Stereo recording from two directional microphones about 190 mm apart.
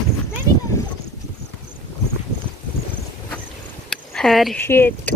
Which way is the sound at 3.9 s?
Centre (ahead or behind).